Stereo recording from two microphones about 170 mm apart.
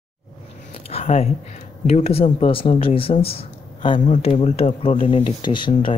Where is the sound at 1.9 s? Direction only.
35° left (ahead or behind).